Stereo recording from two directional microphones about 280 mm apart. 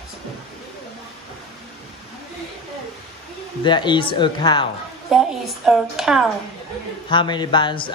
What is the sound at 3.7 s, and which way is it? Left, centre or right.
Speech, centre.